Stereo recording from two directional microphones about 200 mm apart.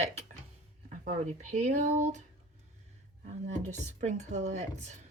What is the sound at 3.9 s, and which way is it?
Speech, 35° right (ahead or behind).